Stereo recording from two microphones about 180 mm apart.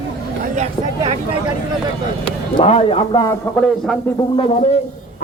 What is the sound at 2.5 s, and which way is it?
Speech, 35° left (ahead or behind).